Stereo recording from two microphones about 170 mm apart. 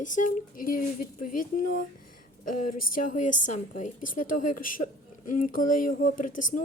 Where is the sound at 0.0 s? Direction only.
50° left (ahead or behind).